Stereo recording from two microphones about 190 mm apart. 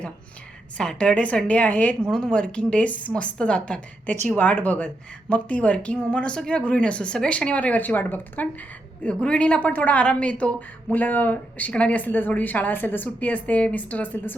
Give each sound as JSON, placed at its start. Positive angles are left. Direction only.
{"t": 0.8, "sound": "speech", "side_deg": 5}